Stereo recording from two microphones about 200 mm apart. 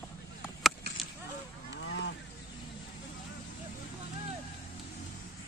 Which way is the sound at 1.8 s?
60° left (ahead or behind).